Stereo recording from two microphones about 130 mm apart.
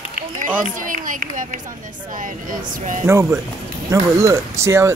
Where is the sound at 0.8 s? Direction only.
90° right.